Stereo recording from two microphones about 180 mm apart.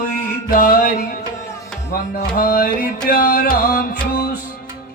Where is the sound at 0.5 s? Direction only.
55° left (ahead or behind).